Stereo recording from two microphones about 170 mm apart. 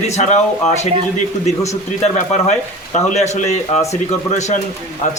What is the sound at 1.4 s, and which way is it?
A man's voice, 40° left (ahead or behind).